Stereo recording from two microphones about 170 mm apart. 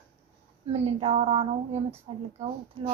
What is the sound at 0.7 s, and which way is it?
A woman's voice, 35° right (ahead or behind).